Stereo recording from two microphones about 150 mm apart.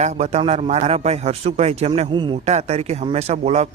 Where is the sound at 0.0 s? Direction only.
45° right (ahead or behind).